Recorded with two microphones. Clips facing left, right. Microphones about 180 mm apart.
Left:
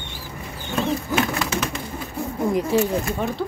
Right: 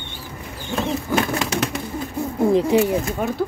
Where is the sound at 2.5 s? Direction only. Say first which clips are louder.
Right 5 dB; 30° right (ahead or behind).